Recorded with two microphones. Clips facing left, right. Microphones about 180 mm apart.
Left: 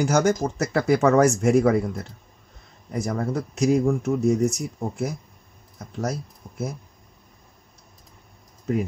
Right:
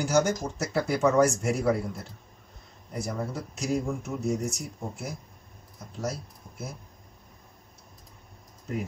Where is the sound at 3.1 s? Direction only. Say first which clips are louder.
Left 7 dB; 70° left (ahead or behind).